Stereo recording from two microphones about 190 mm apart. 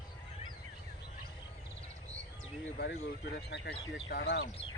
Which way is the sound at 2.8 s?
55° left (ahead or behind).